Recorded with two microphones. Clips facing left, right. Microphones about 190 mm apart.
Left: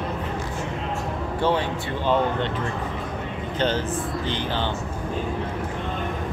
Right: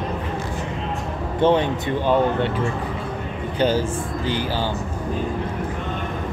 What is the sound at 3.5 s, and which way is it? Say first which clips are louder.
Speech: right 4 dB; 10° right (ahead or behind).